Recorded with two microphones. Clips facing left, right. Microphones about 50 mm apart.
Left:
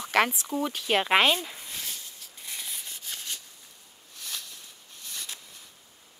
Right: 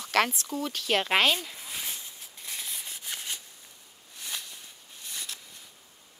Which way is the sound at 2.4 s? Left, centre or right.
Centre.